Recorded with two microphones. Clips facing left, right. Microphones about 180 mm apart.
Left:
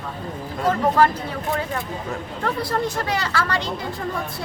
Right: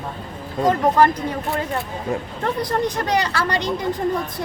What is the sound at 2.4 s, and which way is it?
Speech, 15° right (ahead or behind).